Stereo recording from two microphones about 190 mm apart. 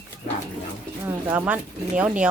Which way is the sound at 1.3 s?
10° right (ahead or behind).